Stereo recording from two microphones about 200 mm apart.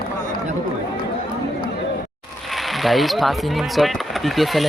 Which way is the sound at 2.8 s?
Centre (ahead or behind).